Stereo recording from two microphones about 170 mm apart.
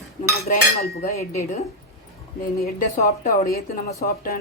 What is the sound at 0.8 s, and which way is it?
Speech, 65° left (ahead or behind).